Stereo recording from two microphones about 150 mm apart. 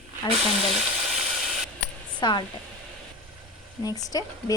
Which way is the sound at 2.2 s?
30° left (ahead or behind).